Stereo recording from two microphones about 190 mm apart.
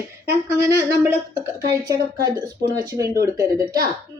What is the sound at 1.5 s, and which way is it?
Speech, 15° right (ahead or behind).